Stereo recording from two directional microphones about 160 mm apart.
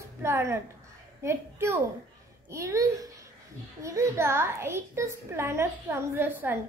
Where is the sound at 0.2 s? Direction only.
15° right (ahead or behind).